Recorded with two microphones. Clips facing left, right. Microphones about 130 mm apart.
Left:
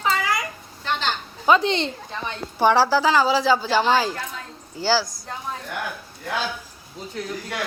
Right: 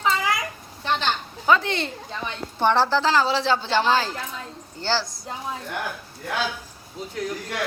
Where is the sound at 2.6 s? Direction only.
5° left (ahead or behind).